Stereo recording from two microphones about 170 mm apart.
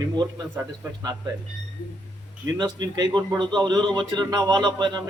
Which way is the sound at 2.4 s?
25° right (ahead or behind).